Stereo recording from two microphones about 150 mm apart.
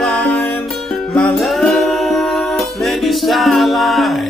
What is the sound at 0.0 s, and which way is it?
Music, 5° left (ahead or behind).